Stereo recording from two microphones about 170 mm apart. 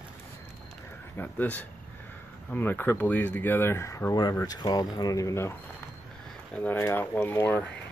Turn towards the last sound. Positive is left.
turn(degrees=5)  # may be behind; listen again after turning